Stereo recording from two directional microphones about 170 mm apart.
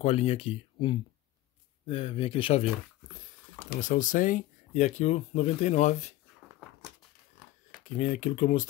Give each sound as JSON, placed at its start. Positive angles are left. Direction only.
{"t": 0.0, "sound": "speech", "side_deg": 35}
{"t": 3.8, "sound": "speech", "side_deg": 50}
{"t": 7.8, "sound": "speech", "side_deg": 50}